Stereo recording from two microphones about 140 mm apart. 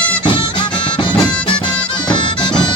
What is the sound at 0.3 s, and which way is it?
Music, 35° left (ahead or behind).